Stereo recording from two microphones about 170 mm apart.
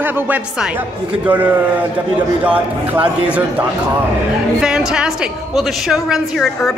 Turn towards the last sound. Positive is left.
turn(degrees=0)  # may be behind; listen again after turning